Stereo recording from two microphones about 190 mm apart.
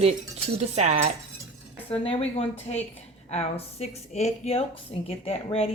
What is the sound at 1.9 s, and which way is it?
Speech, 30° left (ahead or behind).